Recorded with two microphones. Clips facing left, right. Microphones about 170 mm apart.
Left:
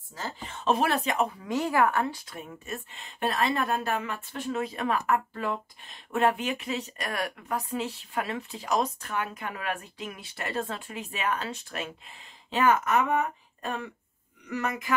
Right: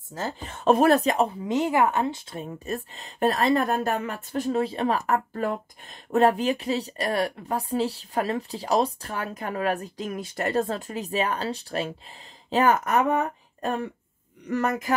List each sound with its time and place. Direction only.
0.1 s a woman's voice: 50° right (ahead or behind)